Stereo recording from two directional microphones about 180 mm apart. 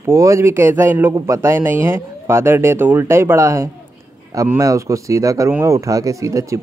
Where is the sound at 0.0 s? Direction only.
15° right (ahead or behind).